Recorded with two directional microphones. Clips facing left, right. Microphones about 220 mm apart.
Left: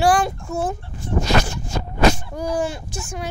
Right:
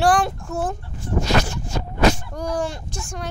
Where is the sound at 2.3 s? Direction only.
5° left (ahead or behind).